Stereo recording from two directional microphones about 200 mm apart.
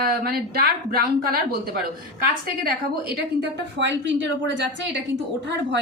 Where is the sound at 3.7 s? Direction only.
60° right (ahead or behind).